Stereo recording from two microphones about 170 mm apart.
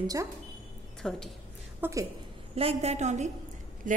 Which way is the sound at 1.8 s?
10° right (ahead or behind).